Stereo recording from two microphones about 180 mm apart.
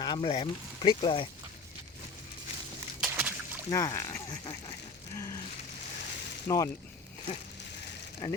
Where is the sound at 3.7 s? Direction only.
20° left (ahead or behind).